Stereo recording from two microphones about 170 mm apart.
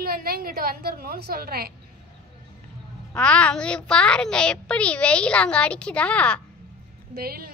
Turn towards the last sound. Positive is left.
turn(degrees=-60)  # may be behind; listen again after turning